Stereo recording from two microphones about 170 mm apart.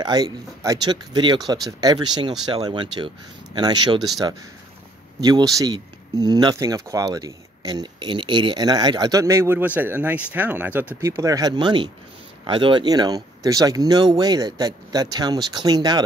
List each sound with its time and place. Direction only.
0.0 s speech: 25° right (ahead or behind)